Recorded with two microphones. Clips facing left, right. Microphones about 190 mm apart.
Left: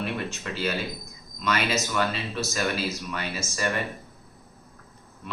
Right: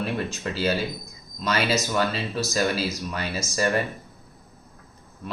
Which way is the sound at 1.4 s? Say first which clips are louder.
Right 2 dB; 35° right (ahead or behind).